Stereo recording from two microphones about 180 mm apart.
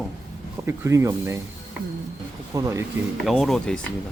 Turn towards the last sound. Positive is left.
turn(degrees=5)  # may be behind; listen again after turning